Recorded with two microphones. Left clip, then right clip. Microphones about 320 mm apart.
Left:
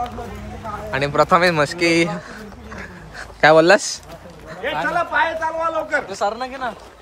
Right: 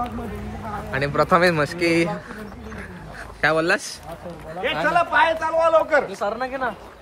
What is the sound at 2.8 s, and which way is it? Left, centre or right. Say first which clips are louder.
Dog: left 4 dB; centre.